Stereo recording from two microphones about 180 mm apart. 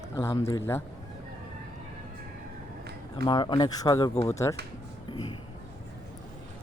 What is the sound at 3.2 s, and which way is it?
Speech, 25° left (ahead or behind).